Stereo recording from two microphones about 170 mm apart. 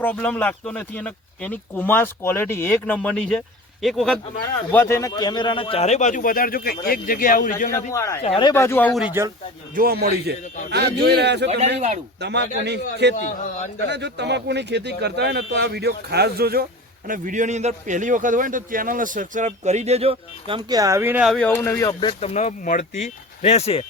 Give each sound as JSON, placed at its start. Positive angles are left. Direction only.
{"t": 0.0, "sound": "speech", "side_deg": 10}
{"t": 4.7, "sound": "a man's voice", "side_deg": 15}
{"t": 7.9, "sound": "speech", "side_deg": 15}
{"t": 8.2, "sound": "a man's voice", "side_deg": 30}
{"t": 8.5, "sound": "speech", "side_deg": 15}
{"t": 8.9, "sound": "speech", "side_deg": 0}
{"t": 9.7, "sound": "a man's voice", "side_deg": -65}
{"t": 13.1, "sound": "a man's voice", "side_deg": 45}
{"t": 13.8, "sound": "speech", "side_deg": -85}
{"t": 17.1, "sound": "a man's voice", "side_deg": -50}
{"t": 20.7, "sound": "speech", "side_deg": -20}
{"t": 21.2, "sound": "speech", "side_deg": 5}
{"t": 21.5, "sound": "speech", "side_deg": 15}
{"t": 22.2, "sound": "a man's voice", "side_deg": 40}